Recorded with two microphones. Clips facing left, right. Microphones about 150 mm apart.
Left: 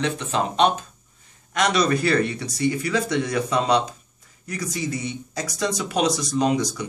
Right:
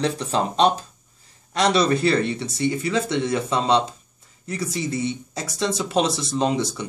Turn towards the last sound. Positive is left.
turn(degrees=-30)  # may be behind; listen again after turning